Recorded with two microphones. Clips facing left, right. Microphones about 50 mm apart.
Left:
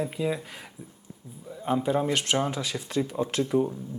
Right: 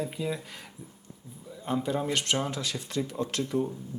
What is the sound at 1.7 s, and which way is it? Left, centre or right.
Speech, centre.